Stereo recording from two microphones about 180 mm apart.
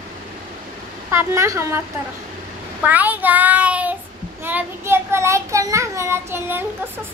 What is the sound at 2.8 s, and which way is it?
Child singing, 10° right (ahead or behind).